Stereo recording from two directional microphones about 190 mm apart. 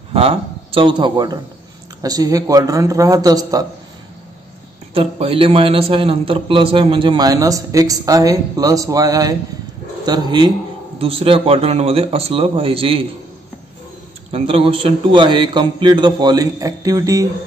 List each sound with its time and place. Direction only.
0.1 s a man's voice: 30° right (ahead or behind)
4.9 s a man's voice: 30° right (ahead or behind)
14.3 s a man's voice: 30° right (ahead or behind)